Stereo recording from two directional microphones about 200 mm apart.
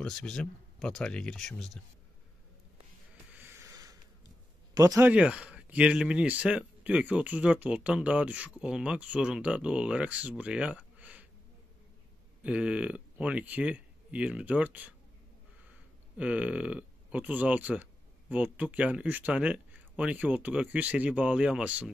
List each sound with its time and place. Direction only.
0.0 s speech: 5° left (ahead or behind)
3.3 s a sound: 10° right (ahead or behind)
4.7 s speech: 15° right (ahead or behind)
12.4 s speech: 5° right (ahead or behind)
16.2 s speech: 5° right (ahead or behind)